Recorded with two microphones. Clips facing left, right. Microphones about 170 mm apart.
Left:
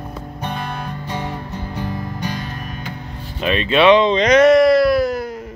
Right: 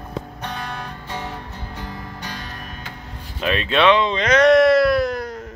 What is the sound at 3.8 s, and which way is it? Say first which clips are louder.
Speech: left 5 dB; 20° left (ahead or behind).